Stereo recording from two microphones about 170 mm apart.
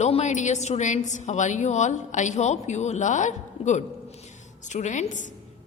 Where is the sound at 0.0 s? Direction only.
45° left (ahead or behind).